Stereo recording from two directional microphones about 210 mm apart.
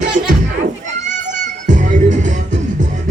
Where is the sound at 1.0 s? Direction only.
35° right (ahead or behind).